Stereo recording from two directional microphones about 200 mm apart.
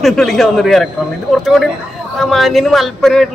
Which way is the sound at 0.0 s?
Centre (ahead or behind).